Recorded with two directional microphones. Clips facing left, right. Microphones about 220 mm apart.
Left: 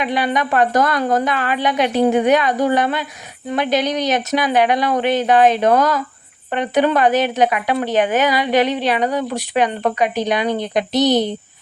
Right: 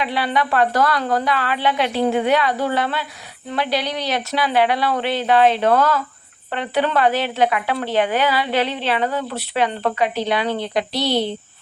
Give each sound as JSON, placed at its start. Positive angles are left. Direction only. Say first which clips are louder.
{"t": 0.0, "sound": "a woman's voice", "louder": "left 2 dB", "side_deg": 15}